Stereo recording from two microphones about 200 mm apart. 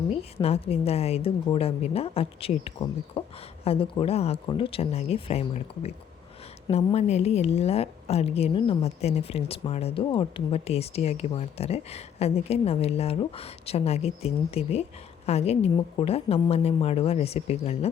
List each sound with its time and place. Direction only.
0.4 s a woman's voice: 30° left (ahead or behind)